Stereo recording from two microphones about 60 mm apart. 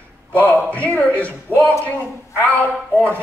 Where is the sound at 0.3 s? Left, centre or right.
Left.